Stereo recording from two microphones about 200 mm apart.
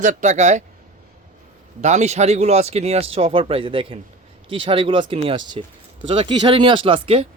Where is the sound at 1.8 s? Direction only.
35° right (ahead or behind).